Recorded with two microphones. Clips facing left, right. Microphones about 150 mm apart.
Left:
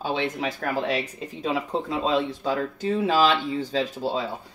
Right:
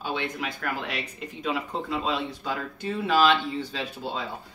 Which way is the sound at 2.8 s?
40° left (ahead or behind).